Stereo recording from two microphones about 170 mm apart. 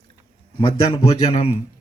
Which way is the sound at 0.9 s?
35° left (ahead or behind).